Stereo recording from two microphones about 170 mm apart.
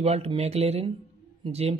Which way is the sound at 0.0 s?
35° right (ahead or behind).